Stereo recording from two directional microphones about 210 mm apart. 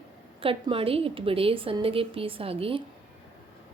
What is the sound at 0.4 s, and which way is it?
A woman's voice, 25° right (ahead or behind).